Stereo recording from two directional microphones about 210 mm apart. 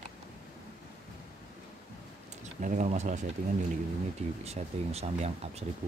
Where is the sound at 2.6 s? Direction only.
35° right (ahead or behind).